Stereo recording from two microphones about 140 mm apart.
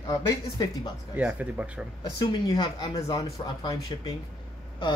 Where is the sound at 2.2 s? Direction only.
30° left (ahead or behind).